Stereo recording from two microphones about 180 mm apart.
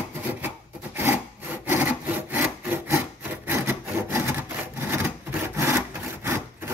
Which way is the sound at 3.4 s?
15° right (ahead or behind).